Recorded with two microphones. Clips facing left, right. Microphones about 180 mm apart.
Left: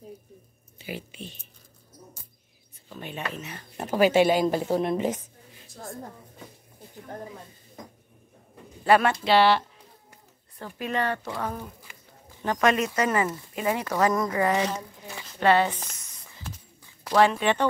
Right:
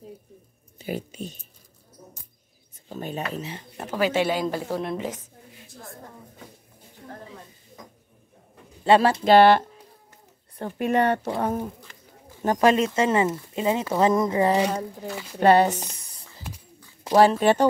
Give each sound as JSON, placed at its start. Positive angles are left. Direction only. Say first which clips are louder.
{"t": 0.7, "sound": "speech", "louder": "right 6 dB", "side_deg": -45}
{"t": 2.9, "sound": "speech", "louder": "right 4 dB", "side_deg": -40}
{"t": 3.9, "sound": "speech", "louder": "left 4 dB", "side_deg": 15}
{"t": 8.8, "sound": "speech", "louder": "right 3 dB", "side_deg": -25}
{"t": 9.2, "sound": "speech", "louder": "right 5 dB", "side_deg": -50}
{"t": 11.2, "sound": "speech", "louder": "right 6 dB", "side_deg": -30}
{"t": 11.9, "sound": "bird", "louder": "right 1 dB", "side_deg": 10}
{"t": 12.4, "sound": "speech", "louder": "right 4 dB", "side_deg": -35}
{"t": 15.3, "sound": "speech", "louder": "right 4 dB", "side_deg": -40}
{"t": 16.0, "sound": "a sound", "louder": "right 2 dB", "side_deg": -35}
{"t": 17.2, "sound": "speech", "louder": "right 4 dB", "side_deg": -40}